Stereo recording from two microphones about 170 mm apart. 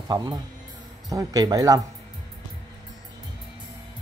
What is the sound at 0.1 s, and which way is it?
Speech, 25° right (ahead or behind).